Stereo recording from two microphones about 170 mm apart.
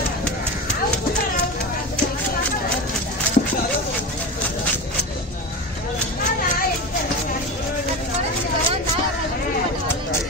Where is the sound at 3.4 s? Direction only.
50° left (ahead or behind).